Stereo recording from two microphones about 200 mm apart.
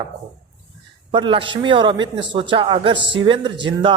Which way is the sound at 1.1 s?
25° right (ahead or behind).